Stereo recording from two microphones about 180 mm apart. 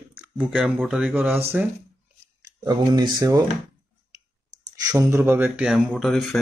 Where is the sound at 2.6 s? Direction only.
20° right (ahead or behind).